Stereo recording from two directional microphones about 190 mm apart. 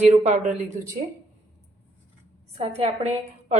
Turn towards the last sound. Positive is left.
turn(degrees=-35)  # may be behind; listen again after turning